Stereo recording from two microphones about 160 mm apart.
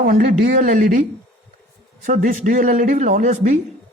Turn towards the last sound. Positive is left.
turn(degrees=-50)  # may be behind; listen again after turning